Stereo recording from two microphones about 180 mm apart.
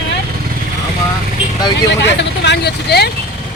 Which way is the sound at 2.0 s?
75° left (ahead or behind).